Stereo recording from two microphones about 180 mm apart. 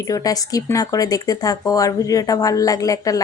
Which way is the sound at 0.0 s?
20° left (ahead or behind).